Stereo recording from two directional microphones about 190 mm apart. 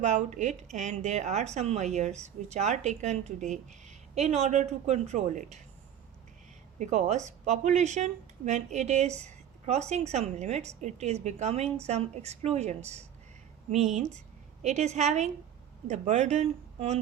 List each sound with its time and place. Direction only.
0.0 s speech: 40° right (ahead or behind)
6.7 s speech: 40° right (ahead or behind)